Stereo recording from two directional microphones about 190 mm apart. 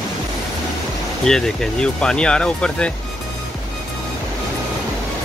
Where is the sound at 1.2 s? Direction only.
5° left (ahead or behind).